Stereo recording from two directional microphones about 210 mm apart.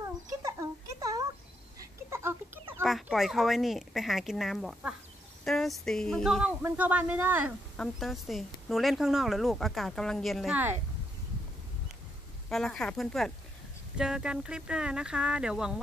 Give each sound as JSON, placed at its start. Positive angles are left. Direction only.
{"t": 0.0, "sound": "a sound", "side_deg": -15}
{"t": 2.8, "sound": "speech", "side_deg": 0}
{"t": 12.4, "sound": "speech", "side_deg": 0}